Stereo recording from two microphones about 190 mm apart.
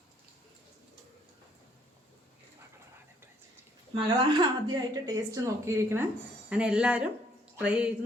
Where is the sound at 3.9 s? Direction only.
25° right (ahead or behind).